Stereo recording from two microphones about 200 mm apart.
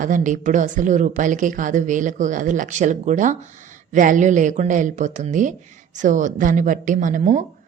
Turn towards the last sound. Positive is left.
turn(degrees=-35)  # may be behind; listen again after turning